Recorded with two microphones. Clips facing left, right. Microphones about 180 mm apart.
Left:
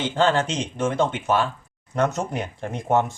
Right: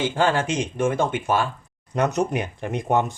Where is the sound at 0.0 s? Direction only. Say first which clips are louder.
Left 1 dB; 10° right (ahead or behind).